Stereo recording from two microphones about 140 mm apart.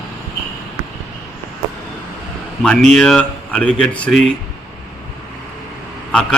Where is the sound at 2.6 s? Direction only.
5° left (ahead or behind).